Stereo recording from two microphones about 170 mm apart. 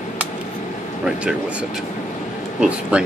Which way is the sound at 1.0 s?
5° right (ahead or behind).